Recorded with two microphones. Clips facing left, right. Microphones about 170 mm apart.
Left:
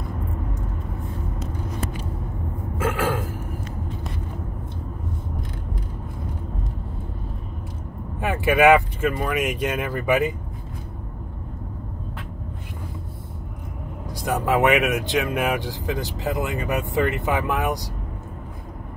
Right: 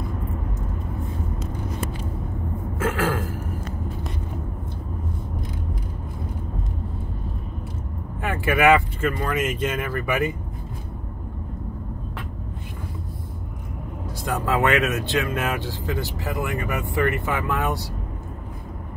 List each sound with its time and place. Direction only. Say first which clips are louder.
8.2 s speech: left 3 dB; 15° left (ahead or behind)
14.2 s speech: left 3 dB; 15° left (ahead or behind)